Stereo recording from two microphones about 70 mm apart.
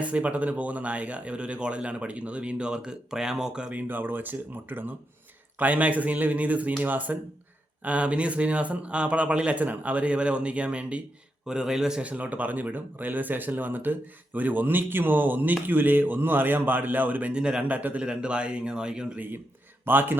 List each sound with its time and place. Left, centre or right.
0.0 s a man's voice: centre
17.3 s speech: centre
19.8 s speech: right